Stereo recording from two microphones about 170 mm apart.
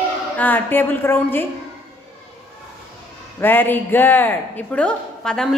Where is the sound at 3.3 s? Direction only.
10° left (ahead or behind).